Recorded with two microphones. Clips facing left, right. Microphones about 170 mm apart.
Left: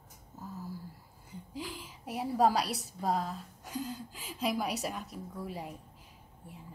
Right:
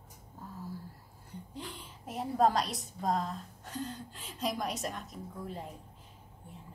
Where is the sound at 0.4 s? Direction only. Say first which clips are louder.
Left 2 dB; centre (ahead or behind).